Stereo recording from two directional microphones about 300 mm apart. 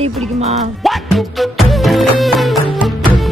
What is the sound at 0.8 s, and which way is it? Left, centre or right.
Music, centre.